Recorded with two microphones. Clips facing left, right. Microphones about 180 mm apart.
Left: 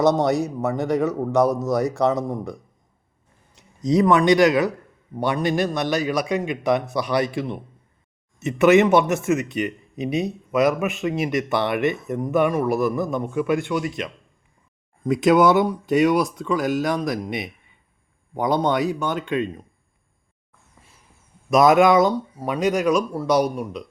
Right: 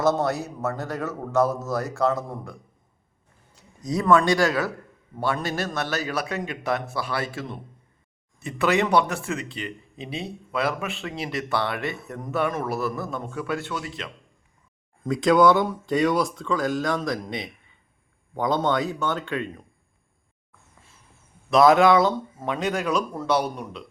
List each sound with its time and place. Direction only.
0.0 s speech: 15° left (ahead or behind)
3.8 s speech: 20° left (ahead or behind)
21.5 s speech: 20° left (ahead or behind)